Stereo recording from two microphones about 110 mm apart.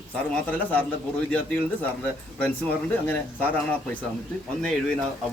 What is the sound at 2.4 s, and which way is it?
A man's voice, 15° left (ahead or behind).